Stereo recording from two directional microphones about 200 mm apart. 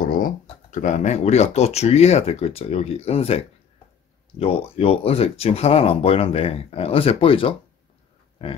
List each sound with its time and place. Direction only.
0.0 s speech: 45° left (ahead or behind); by 7.5 s 25° left (ahead or behind)